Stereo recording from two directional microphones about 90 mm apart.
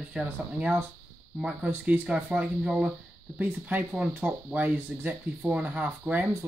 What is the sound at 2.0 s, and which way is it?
Speech, 10° right (ahead or behind).